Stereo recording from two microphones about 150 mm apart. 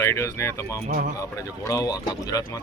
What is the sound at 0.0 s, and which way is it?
Speech, 20° left (ahead or behind).